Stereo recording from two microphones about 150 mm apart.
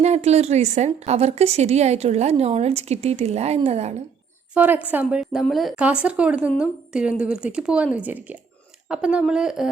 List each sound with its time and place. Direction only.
0.0 s a woman's voice: 45° right (ahead or behind)
4.5 s a woman's voice: 10° right (ahead or behind)